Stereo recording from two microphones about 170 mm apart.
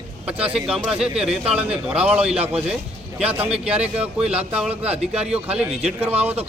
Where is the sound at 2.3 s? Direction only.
35° right (ahead or behind).